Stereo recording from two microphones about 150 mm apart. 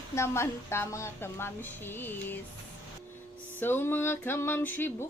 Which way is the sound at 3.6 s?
15° left (ahead or behind).